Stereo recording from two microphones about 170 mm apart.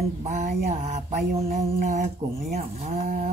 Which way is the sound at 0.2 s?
40° right (ahead or behind).